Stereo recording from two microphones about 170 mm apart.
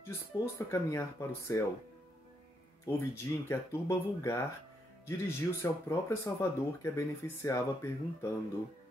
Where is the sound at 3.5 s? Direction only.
15° left (ahead or behind).